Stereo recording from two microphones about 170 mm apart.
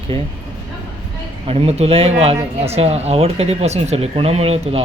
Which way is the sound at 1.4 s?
35° right (ahead or behind).